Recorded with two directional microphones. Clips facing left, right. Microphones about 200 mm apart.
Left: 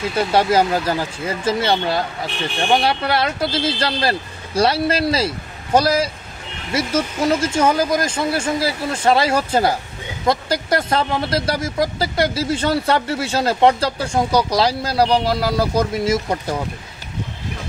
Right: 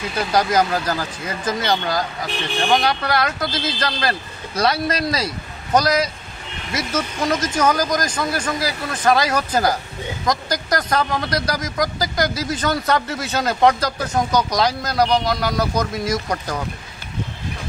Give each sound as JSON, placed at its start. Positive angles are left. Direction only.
{"t": 0.1, "sound": "speech", "side_deg": 25}